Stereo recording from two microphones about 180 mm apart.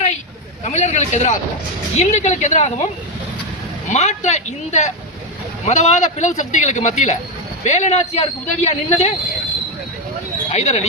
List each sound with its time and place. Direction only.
0.6 s a man's voice: 40° left (ahead or behind)
3.8 s a man's voice: 40° left (ahead or behind)
10.5 s a man's voice: 40° left (ahead or behind)